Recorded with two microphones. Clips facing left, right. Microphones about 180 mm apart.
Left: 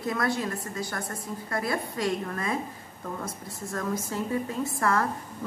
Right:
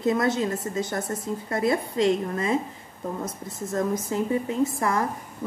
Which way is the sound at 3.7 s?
20° right (ahead or behind).